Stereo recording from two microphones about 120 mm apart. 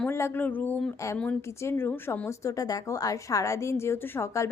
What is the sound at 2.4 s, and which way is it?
A woman's voice, 30° left (ahead or behind).